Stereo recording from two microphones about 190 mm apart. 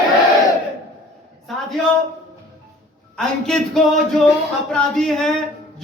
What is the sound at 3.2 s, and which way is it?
A man's voice, centre (ahead or behind).